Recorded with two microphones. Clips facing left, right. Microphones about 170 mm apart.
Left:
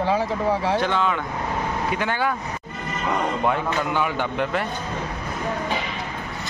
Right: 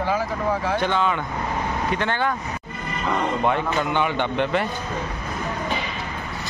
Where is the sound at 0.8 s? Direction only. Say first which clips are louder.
Even; centre (ahead or behind).